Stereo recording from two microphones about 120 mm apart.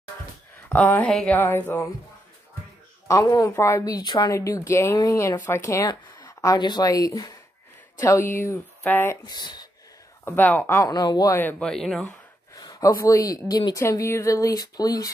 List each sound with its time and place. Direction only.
0.7 s speech: 20° left (ahead or behind)
1.0 s speech: 5° left (ahead or behind)
1.3 s speech: 15° left (ahead or behind)
3.1 s speech: 25° left (ahead or behind)
8.0 s speech: 20° left (ahead or behind)
9.2 s speech: 35° left (ahead or behind)
10.2 s speech: 15° left (ahead or behind)
10.9 s speech: 35° left (ahead or behind)
11.3 s speech: 15° left (ahead or behind)
11.7 s speech: 5° left (ahead or behind)
12.5 s speech: 30° left (ahead or behind)
13.7 s speech: 25° left (ahead or behind)